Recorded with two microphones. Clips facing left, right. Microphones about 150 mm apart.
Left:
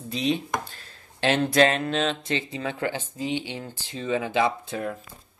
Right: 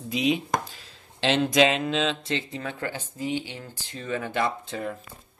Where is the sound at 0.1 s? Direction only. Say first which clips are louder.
Right 1 dB; centre (ahead or behind).